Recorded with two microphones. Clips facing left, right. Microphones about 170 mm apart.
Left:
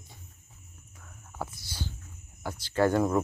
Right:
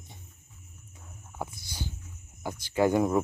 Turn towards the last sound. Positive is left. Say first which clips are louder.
# right 1 dB
turn(degrees=-15)  # may be behind; listen again after turning